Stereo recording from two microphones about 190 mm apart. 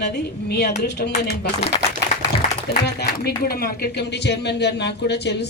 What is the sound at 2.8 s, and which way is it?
Speech, 60° left (ahead or behind).